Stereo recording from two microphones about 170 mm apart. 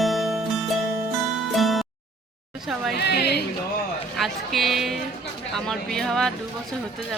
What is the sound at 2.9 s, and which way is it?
Speech, 75° left (ahead or behind).